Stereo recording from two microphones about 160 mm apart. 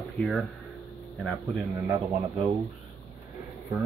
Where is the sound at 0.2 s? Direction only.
Centre (ahead or behind).